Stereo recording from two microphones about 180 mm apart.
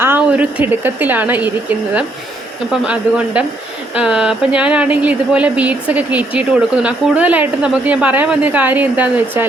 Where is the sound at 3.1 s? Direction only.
10° right (ahead or behind).